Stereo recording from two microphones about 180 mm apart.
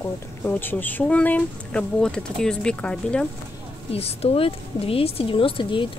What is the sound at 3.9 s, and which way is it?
A woman's voice, 35° left (ahead or behind).